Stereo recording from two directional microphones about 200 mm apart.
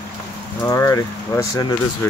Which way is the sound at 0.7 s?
15° left (ahead or behind).